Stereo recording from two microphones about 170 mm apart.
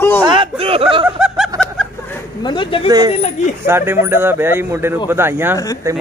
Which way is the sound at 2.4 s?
30° left (ahead or behind).